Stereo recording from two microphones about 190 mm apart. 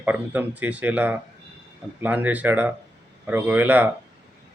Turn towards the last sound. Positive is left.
turn(degrees=-10)  # may be behind; listen again after turning